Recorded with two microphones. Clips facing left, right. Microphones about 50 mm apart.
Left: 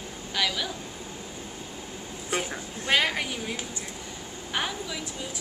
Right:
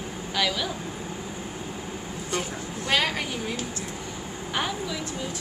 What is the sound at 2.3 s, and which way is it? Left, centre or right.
Speech, centre.